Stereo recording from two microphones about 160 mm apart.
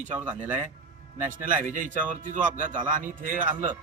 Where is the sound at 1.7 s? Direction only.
55° right (ahead or behind).